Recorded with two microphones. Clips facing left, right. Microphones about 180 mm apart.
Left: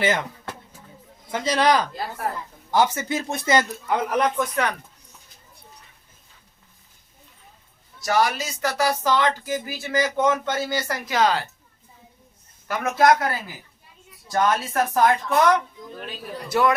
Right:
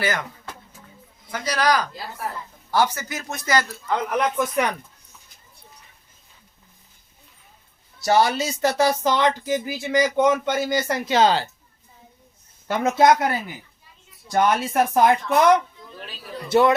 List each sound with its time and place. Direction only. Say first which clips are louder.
0.0 s speech: left 3 dB; 25° left (ahead or behind)
1.3 s speech: left 2 dB; 25° left (ahead or behind)
4.1 s speech: even; 5° right (ahead or behind)
8.0 s speech: right 3 dB; 30° right (ahead or behind)
12.6 s speech: right 2 dB; 25° right (ahead or behind)